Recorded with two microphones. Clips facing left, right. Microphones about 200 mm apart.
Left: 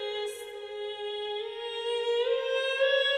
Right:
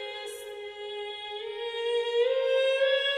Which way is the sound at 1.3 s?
15° right (ahead or behind).